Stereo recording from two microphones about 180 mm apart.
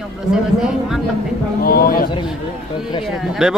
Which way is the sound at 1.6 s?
55° left (ahead or behind).